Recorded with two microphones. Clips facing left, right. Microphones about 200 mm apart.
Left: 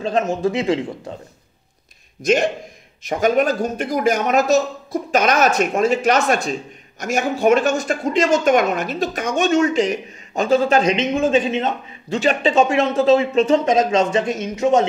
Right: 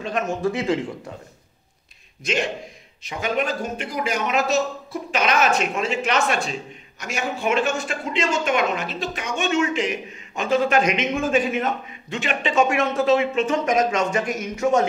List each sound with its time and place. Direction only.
0.0 s speech: 25° left (ahead or behind)
2.2 s a man's voice: 45° left (ahead or behind); by 11.7 s 25° left (ahead or behind)
12.1 s speech: 35° left (ahead or behind)